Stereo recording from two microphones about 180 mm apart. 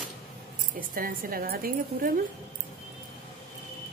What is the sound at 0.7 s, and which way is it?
A woman's voice, 50° right (ahead or behind).